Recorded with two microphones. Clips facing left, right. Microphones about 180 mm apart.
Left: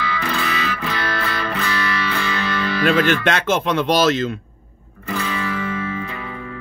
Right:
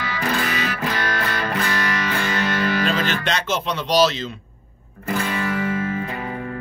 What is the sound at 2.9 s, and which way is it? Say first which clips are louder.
Speech: left 6 dB; 55° left (ahead or behind).